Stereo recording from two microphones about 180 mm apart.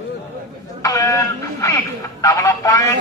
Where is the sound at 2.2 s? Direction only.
20° left (ahead or behind).